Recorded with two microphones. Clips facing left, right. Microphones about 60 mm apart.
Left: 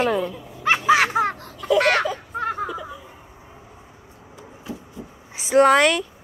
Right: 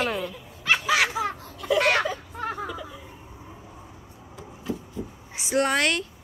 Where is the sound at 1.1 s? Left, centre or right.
Left.